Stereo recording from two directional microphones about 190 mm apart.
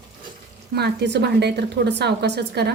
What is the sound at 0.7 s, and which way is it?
A woman's voice, 60° right (ahead or behind).